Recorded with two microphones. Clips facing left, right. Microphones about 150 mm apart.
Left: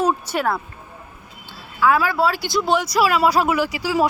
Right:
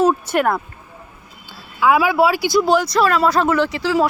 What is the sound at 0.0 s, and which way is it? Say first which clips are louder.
Speech: right 5 dB; 10° left (ahead or behind).